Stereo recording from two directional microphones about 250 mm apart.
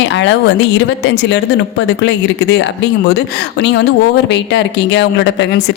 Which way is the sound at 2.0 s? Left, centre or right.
Left.